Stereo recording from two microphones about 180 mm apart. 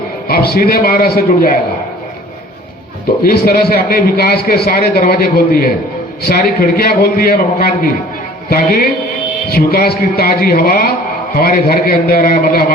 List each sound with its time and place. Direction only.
0.3 s a man's voice: 55° left (ahead or behind)
3.2 s a man's voice: 55° left (ahead or behind)